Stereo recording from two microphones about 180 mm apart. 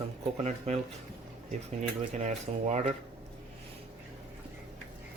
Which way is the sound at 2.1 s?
40° right (ahead or behind).